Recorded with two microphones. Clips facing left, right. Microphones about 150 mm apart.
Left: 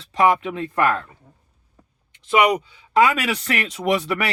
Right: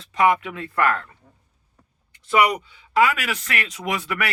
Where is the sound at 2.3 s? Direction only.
20° left (ahead or behind).